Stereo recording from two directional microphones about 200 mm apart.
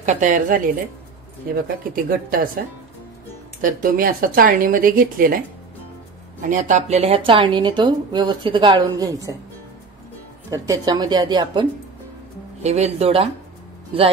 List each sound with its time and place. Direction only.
0.0 s speech: 40° right (ahead or behind)
3.8 s speech: 45° right (ahead or behind)
6.5 s speech: 35° right (ahead or behind); by 9.3 s 20° right (ahead or behind)
10.5 s speech: 15° right (ahead or behind)
12.6 s speech: 35° right (ahead or behind)